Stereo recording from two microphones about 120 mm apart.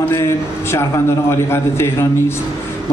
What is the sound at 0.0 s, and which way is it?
A man's voice, 20° left (ahead or behind).